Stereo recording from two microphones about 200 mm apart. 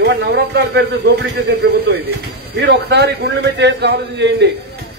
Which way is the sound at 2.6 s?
55° right (ahead or behind).